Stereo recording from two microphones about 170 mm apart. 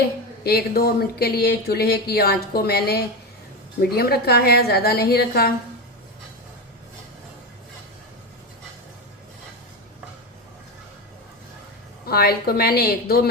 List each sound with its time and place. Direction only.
0.4 s speech: 65° left (ahead or behind)
12.0 s a woman's voice: 65° left (ahead or behind)